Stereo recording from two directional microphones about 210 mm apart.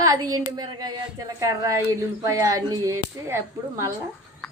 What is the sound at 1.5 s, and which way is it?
Speech, 15° right (ahead or behind).